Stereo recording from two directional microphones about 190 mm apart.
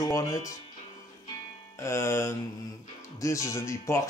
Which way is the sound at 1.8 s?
15° left (ahead or behind).